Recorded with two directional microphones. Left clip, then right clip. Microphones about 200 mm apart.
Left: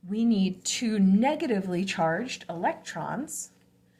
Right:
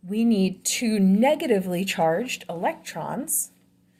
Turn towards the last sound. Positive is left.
turn(degrees=-40)  # may be behind; listen again after turning